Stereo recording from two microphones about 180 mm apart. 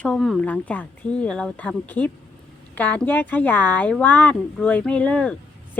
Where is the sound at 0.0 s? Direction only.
5° left (ahead or behind).